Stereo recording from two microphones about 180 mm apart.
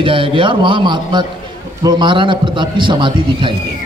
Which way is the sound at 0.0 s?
30° right (ahead or behind).